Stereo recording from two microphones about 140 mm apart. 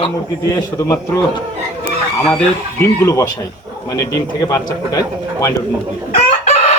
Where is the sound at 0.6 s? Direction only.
20° left (ahead or behind).